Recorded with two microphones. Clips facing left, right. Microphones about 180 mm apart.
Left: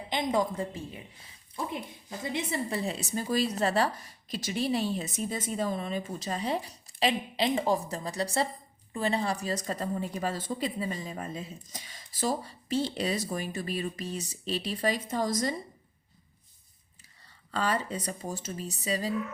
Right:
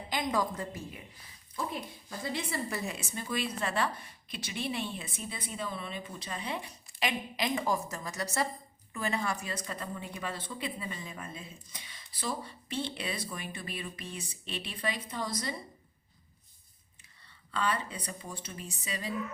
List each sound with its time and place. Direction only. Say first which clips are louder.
0.1 s a woman's voice: left 3 dB; 25° left (ahead or behind); by 15.5 s 45° left (ahead or behind)
17.5 s a woman's voice: left 3 dB; 40° left (ahead or behind)